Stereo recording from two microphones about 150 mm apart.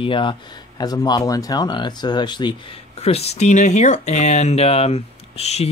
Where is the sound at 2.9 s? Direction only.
45° left (ahead or behind).